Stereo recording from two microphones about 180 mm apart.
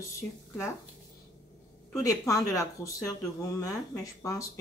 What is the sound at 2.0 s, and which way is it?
A woman's voice, 20° left (ahead or behind).